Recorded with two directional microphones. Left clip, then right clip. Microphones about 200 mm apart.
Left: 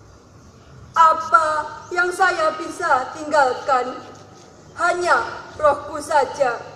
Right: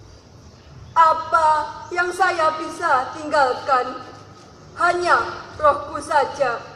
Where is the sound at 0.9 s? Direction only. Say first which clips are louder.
Left 1 dB; 55° left (ahead or behind).